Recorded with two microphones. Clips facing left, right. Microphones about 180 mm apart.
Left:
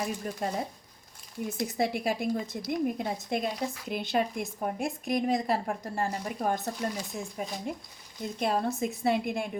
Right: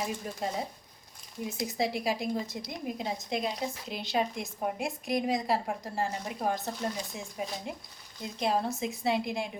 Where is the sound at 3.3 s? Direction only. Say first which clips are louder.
Left 2 dB; 50° left (ahead or behind).